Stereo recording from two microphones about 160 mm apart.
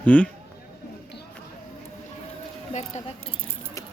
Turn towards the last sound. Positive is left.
turn(degrees=45)  # may be behind; listen again after turning